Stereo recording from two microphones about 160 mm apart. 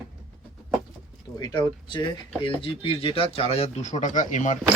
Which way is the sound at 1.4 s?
25° left (ahead or behind).